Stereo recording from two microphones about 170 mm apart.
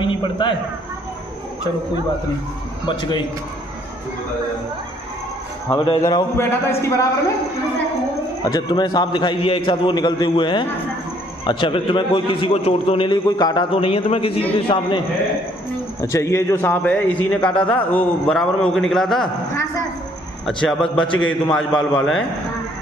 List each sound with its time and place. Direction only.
0.0 s a man's voice: 30° left (ahead or behind)
5.9 s a man's voice: 25° left (ahead or behind)
8.5 s a man's voice: 25° left (ahead or behind)
16.0 s a man's voice: 15° left (ahead or behind); by 19.2 s centre (ahead or behind)
20.6 s a man's voice: 5° left (ahead or behind)